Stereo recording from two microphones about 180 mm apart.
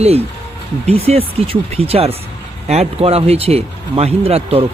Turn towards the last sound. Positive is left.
turn(degrees=-35)  # may be behind; listen again after turning